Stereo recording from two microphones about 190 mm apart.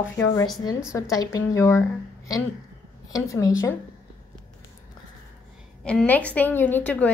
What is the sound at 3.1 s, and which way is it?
Speech, 20° left (ahead or behind).